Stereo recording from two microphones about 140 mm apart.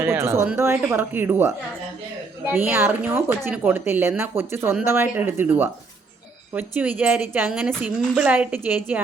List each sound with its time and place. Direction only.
0.0 s speech: 15° right (ahead or behind)